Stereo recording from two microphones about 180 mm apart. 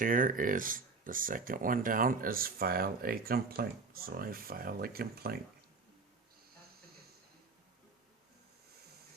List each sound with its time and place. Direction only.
0.0 s speech: 50° right (ahead or behind)